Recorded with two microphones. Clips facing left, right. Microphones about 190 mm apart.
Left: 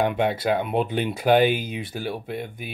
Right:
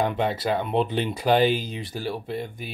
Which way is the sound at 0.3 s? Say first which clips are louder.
Left 2 dB; 55° left (ahead or behind).